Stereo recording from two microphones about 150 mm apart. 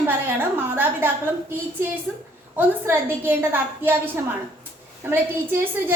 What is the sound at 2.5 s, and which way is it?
A woman's voice, 15° right (ahead or behind).